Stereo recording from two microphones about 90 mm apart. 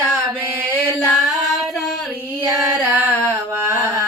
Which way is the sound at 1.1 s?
Centre (ahead or behind).